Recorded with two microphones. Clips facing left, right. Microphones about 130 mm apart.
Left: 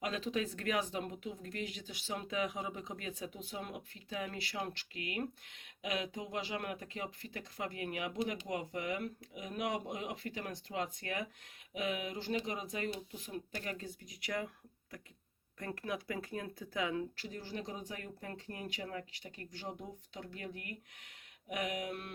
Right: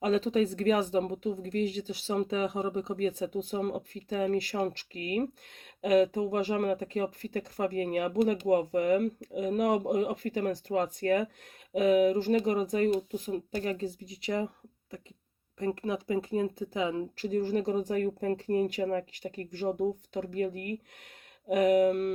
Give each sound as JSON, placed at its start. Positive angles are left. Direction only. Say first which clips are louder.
{"t": 0.0, "sound": "speech", "louder": "right 11 dB", "side_deg": -35}
{"t": 17.2, "sound": "speech", "louder": "right 15 dB", "side_deg": -40}